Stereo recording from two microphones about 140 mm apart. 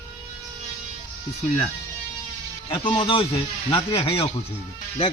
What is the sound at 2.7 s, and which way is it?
Speech, 40° left (ahead or behind).